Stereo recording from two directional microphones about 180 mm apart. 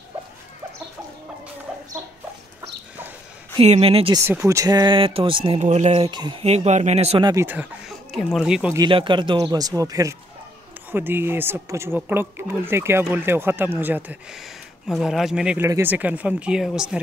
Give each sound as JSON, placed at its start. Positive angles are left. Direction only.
{"t": 3.5, "sound": "speech", "side_deg": -35}
{"t": 4.2, "sound": "speech", "side_deg": -15}
{"t": 6.0, "sound": "speech", "side_deg": -25}
{"t": 7.2, "sound": "speech", "side_deg": -15}
{"t": 8.1, "sound": "speech", "side_deg": 0}
{"t": 8.7, "sound": "speech", "side_deg": -25}